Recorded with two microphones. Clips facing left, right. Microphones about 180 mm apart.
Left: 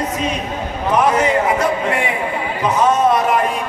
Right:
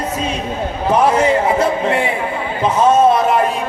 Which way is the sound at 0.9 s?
30° right (ahead or behind).